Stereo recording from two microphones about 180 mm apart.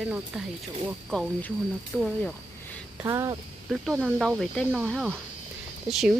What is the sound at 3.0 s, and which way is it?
Speech, 20° right (ahead or behind).